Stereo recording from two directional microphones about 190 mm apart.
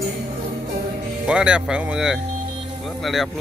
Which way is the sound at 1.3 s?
5° right (ahead or behind).